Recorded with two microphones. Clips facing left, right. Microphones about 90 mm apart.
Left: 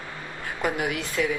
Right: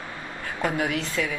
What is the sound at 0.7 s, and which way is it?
Speech, 20° left (ahead or behind).